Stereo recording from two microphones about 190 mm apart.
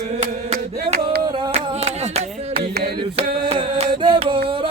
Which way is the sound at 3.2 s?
30° right (ahead or behind).